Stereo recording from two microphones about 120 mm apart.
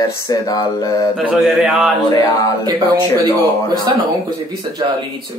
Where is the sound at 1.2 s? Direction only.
5° right (ahead or behind).